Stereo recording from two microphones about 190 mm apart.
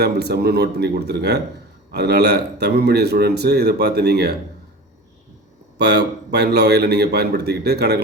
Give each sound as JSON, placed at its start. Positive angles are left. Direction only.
{"t": 0.0, "sound": "a man's voice", "side_deg": -60}
{"t": 5.7, "sound": "a man's voice", "side_deg": -60}